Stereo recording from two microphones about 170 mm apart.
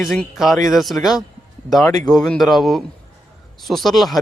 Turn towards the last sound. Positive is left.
turn(degrees=0)  # may be behind; listen again after turning